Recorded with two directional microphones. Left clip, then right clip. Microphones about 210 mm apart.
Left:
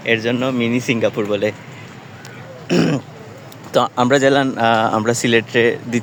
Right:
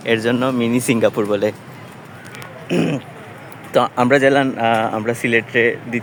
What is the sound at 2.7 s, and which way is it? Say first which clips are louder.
Speech: left 2 dB; 10° left (ahead or behind).